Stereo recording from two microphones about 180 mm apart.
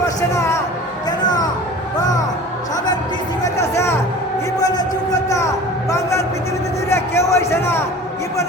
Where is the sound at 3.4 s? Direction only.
15° left (ahead or behind).